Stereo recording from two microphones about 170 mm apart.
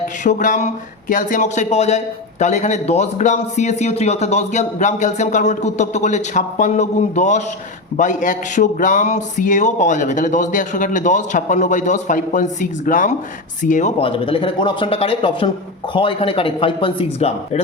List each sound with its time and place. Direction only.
0.3 s speech: 50° left (ahead or behind)
14.0 s speech: 30° left (ahead or behind)